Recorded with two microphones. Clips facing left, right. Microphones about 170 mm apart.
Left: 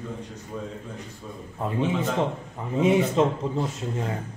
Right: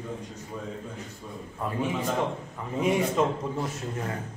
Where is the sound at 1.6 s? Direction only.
25° left (ahead or behind).